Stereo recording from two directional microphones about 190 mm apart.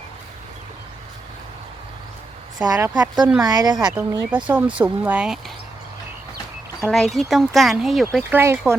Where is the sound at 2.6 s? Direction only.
15° right (ahead or behind).